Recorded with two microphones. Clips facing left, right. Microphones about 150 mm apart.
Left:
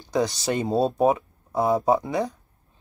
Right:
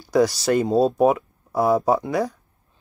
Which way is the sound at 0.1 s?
20° left (ahead or behind).